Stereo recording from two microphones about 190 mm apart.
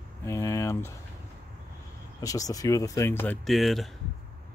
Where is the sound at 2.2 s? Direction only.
20° left (ahead or behind).